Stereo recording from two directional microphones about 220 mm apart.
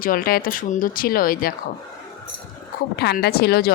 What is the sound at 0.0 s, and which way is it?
Speech, 40° left (ahead or behind).